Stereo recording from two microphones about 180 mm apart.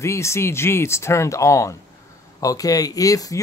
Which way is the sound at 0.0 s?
15° left (ahead or behind).